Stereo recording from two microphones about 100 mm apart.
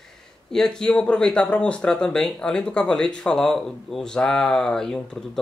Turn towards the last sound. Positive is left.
turn(degrees=5)  # may be behind; listen again after turning